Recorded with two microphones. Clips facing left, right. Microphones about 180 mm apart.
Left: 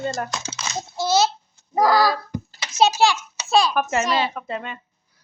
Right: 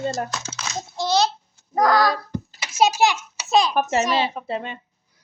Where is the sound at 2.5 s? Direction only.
10° right (ahead or behind).